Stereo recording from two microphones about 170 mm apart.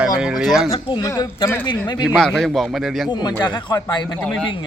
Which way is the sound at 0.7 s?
30° left (ahead or behind).